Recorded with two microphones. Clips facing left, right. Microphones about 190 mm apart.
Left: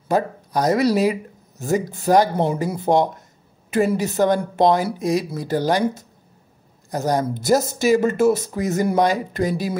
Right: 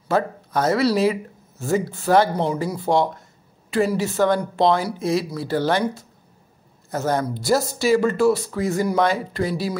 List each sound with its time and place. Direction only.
0.1 s speech: 15° left (ahead or behind)